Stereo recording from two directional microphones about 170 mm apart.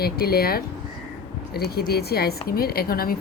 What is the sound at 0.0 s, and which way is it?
A woman's voice, 65° left (ahead or behind).